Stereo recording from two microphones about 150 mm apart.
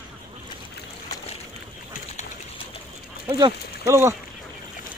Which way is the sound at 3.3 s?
35° right (ahead or behind).